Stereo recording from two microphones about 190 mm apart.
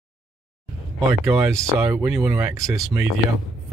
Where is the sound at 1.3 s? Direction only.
15° right (ahead or behind).